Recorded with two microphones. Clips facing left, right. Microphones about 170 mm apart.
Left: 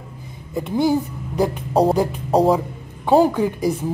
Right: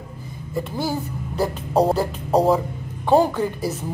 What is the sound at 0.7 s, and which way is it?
Speech, 20° left (ahead or behind).